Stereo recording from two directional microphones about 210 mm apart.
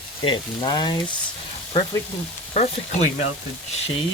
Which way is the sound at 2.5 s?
30° left (ahead or behind).